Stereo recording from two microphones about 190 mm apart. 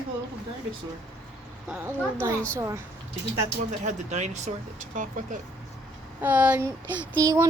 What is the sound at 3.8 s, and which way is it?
Speech, 35° right (ahead or behind).